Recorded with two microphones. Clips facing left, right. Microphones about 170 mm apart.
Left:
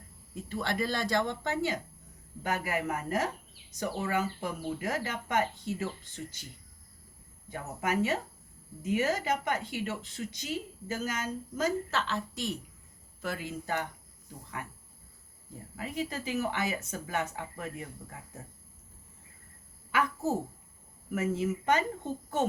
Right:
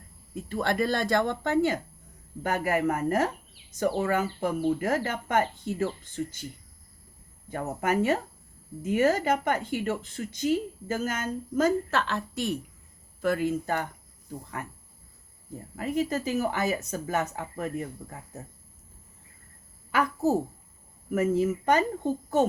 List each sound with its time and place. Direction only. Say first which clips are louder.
0.4 s speech: right 6 dB; 55° right (ahead or behind)
7.5 s speech: right 5 dB; 50° right (ahead or behind)
19.9 s a woman's voice: right 5 dB; 40° right (ahead or behind)